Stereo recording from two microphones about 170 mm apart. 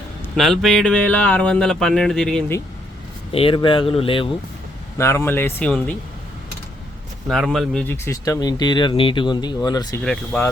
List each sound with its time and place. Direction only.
0.3 s speech: centre (ahead or behind)
3.3 s speech: 30° left (ahead or behind)
4.9 s speech: 15° left (ahead or behind)
7.3 s speech: centre (ahead or behind)
8.0 s speech: 20° left (ahead or behind)
10.0 s speech: 5° left (ahead or behind)